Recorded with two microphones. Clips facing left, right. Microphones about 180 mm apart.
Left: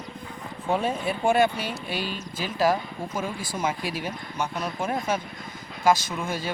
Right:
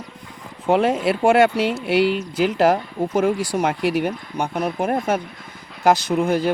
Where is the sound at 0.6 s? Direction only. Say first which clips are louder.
Right 8 dB; 85° right.